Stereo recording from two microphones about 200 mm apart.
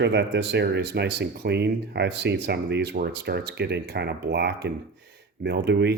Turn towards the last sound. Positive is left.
turn(degrees=-55)  # may be behind; listen again after turning